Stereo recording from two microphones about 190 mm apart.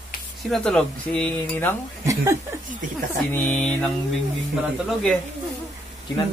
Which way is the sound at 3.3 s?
10° left (ahead or behind).